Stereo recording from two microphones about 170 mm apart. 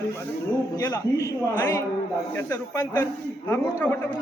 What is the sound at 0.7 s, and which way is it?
A man's voice, 20° left (ahead or behind).